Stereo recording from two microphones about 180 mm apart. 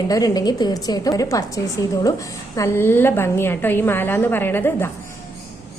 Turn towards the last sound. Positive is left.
turn(degrees=10)  # may be behind; listen again after turning